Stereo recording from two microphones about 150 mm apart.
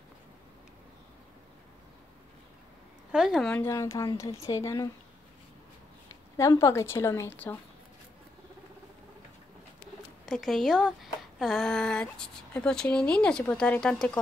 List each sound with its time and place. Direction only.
3.1 s speech: 5° right (ahead or behind)
3.5 s a woman's voice: 15° left (ahead or behind)
6.3 s a woman's voice: 20° left (ahead or behind)
10.2 s speech: centre (ahead or behind)